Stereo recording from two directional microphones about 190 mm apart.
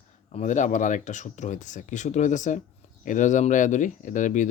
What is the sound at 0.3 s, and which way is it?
Speech, 40° left (ahead or behind).